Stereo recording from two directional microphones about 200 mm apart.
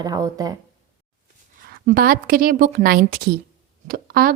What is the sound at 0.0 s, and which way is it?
Speech, 20° right (ahead or behind).